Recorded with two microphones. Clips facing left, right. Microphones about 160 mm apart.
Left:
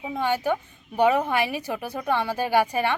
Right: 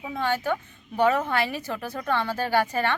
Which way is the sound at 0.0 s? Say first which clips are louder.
Left 2 dB; 15° left (ahead or behind).